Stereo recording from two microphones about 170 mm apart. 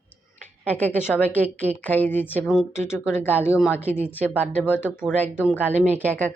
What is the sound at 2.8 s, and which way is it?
A woman's voice, 15° left (ahead or behind).